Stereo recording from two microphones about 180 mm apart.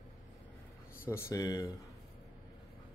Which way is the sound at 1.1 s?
15° left (ahead or behind).